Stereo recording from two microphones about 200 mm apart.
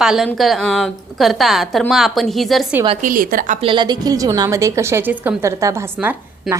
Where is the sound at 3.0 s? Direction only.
45° right (ahead or behind).